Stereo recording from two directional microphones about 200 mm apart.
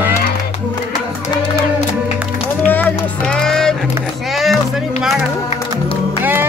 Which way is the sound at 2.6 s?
10° left (ahead or behind).